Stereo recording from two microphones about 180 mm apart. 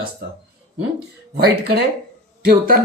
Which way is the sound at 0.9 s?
60° right (ahead or behind).